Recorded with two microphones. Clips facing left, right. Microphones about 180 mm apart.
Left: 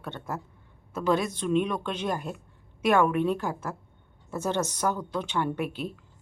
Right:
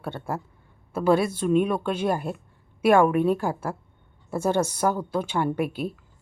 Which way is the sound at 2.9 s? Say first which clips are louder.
Right 4 dB; 45° right (ahead or behind).